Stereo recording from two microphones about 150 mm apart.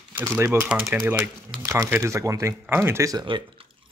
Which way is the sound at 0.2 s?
15° right (ahead or behind).